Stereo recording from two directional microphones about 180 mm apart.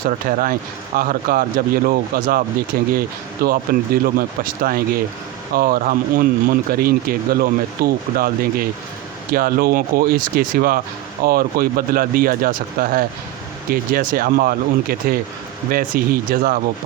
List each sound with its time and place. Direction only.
0.3 s speech: 50° right (ahead or behind)